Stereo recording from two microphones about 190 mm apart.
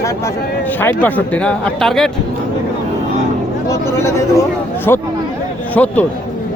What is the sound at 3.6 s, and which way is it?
Speech, 15° left (ahead or behind).